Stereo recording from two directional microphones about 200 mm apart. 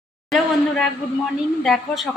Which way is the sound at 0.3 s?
Centre (ahead or behind).